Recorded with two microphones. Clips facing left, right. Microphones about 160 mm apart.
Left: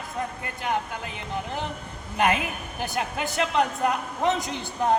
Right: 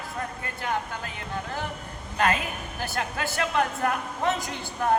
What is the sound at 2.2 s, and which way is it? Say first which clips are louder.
A woman's voice: left 2 dB; 20° left (ahead or behind).